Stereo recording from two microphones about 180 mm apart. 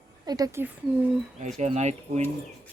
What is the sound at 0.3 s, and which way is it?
Speech, 20° right (ahead or behind).